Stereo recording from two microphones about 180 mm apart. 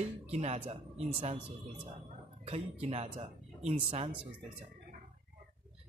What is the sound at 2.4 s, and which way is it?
A man's voice, 35° right (ahead or behind).